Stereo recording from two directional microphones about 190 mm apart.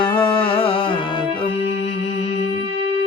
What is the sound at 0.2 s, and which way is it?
Music, 25° left (ahead or behind).